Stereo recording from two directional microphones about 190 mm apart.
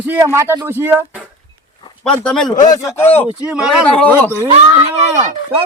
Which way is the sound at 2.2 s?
5° left (ahead or behind).